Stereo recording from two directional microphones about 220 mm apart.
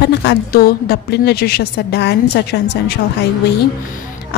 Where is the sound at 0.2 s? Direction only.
45° left (ahead or behind).